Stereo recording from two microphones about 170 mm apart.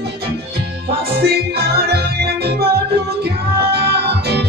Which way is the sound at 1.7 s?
70° right (ahead or behind).